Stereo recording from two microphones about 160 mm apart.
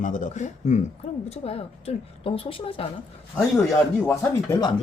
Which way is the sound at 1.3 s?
40° left (ahead or behind).